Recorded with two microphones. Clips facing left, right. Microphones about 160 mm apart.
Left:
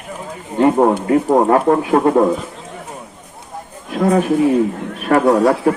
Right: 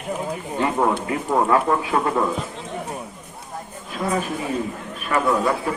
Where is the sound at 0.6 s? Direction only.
45° left (ahead or behind).